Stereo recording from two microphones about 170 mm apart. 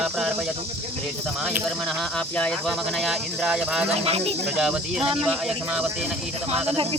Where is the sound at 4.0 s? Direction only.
35° right (ahead or behind).